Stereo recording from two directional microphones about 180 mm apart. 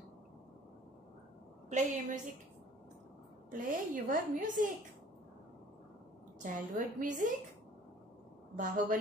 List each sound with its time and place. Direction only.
1.7 s a woman's voice: 40° right (ahead or behind)
3.4 s a woman's voice: 50° right (ahead or behind)
6.4 s a woman's voice: 45° right (ahead or behind)
8.5 s a woman's voice: 45° right (ahead or behind)